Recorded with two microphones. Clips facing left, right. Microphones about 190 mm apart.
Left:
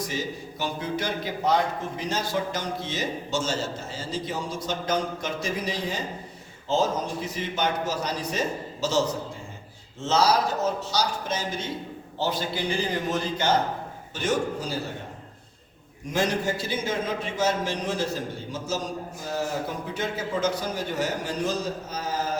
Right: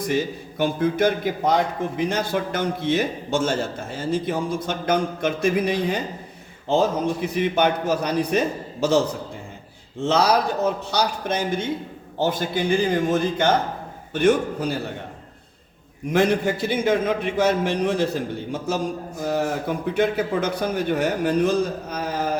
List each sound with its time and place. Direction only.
0.1 s a man's voice: 55° right (ahead or behind)
10.0 s a man's voice: 60° right (ahead or behind)
16.1 s a man's voice: 60° right (ahead or behind)